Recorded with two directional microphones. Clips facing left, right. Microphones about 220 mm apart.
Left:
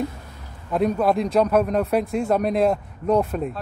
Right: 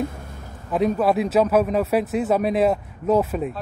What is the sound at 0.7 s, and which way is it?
A man's voice, centre (ahead or behind).